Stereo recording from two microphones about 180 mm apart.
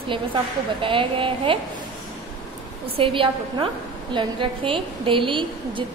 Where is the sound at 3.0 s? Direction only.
30° right (ahead or behind).